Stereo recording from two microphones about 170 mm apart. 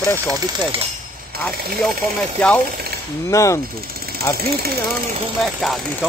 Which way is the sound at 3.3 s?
20° left (ahead or behind).